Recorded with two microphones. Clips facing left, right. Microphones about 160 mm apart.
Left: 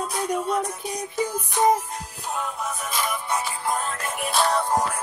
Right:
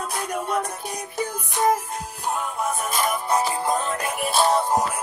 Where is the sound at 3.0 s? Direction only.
40° right (ahead or behind).